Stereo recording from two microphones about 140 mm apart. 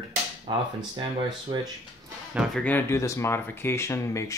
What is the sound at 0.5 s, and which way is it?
Speech, 35° right (ahead or behind).